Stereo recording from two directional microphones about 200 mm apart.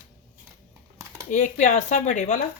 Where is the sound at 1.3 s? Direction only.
40° left (ahead or behind).